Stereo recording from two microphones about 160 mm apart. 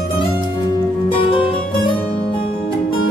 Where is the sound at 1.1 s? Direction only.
35° left (ahead or behind).